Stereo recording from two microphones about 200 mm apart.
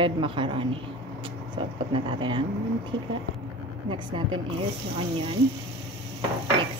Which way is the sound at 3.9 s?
25° right (ahead or behind).